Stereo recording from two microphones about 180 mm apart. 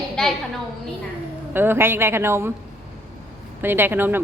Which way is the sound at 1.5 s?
10° right (ahead or behind).